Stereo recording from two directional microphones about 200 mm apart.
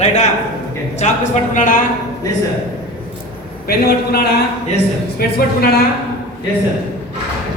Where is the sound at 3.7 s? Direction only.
50° left (ahead or behind).